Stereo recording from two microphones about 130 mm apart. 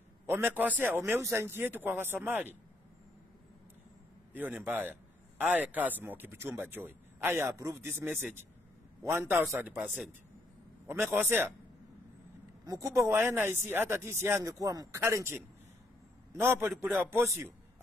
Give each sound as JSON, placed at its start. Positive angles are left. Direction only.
{"t": 0.3, "sound": "speech", "side_deg": -15}
{"t": 4.3, "sound": "speech", "side_deg": -15}
{"t": 10.9, "sound": "speech", "side_deg": -15}
{"t": 12.6, "sound": "speech", "side_deg": -25}